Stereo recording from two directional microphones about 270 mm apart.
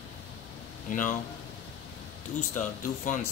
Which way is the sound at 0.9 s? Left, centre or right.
Left.